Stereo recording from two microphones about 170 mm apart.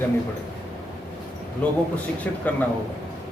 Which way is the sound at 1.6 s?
5° left (ahead or behind).